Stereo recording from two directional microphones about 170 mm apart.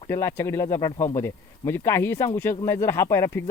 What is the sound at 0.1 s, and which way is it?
Speech, 15° left (ahead or behind).